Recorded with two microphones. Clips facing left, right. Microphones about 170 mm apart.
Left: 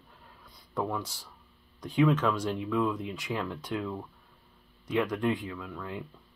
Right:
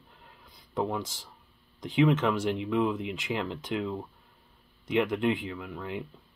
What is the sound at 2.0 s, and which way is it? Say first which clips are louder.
Speech: right 1 dB; 20° right (ahead or behind).